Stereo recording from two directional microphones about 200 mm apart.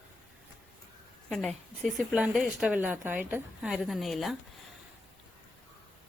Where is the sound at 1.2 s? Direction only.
Centre (ahead or behind).